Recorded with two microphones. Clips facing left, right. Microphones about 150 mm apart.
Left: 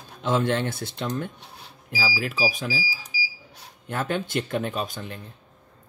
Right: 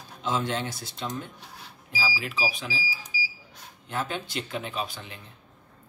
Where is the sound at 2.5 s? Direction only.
45° left (ahead or behind).